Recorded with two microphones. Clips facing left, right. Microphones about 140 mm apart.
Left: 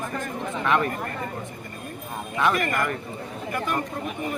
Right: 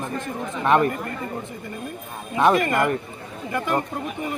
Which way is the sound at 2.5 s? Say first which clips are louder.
Right 5 dB; 25° right (ahead or behind).